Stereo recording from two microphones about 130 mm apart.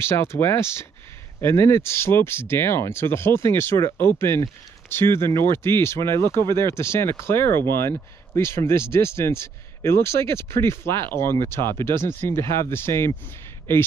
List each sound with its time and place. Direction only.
0.0 s speech: 20° left (ahead or behind)